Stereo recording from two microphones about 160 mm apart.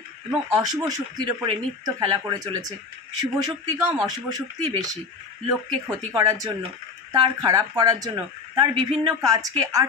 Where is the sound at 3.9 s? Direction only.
25° right (ahead or behind).